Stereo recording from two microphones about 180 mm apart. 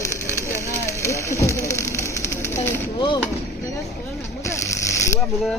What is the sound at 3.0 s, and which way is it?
Chop, 25° left (ahead or behind).